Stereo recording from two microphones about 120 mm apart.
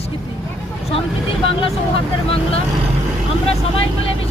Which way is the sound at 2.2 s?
55° left (ahead or behind).